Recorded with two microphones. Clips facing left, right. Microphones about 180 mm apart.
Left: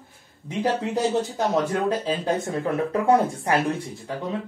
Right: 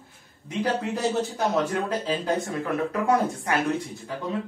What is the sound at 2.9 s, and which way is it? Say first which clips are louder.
Speech: left 4 dB; 30° left (ahead or behind).